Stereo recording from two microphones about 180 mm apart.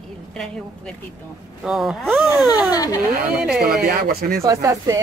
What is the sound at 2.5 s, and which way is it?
Speech, 20° left (ahead or behind).